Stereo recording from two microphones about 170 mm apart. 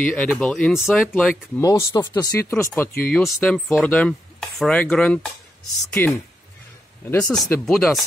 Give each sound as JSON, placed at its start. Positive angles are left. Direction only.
{"t": 0.0, "sound": "speech", "side_deg": 10}
{"t": 1.6, "sound": "speech", "side_deg": 20}